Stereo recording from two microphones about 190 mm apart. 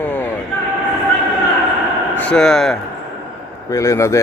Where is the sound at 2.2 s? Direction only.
5° left (ahead or behind).